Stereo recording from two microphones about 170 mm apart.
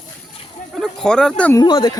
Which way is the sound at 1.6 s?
25° left (ahead or behind).